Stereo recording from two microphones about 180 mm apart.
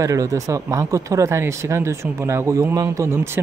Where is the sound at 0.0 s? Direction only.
20° right (ahead or behind).